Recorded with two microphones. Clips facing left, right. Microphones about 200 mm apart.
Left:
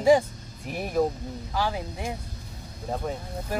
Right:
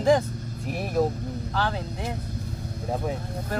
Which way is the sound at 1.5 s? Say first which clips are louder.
Left 1 dB; 10° left (ahead or behind).